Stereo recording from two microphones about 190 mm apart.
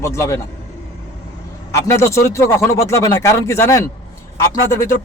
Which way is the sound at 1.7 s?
15° left (ahead or behind).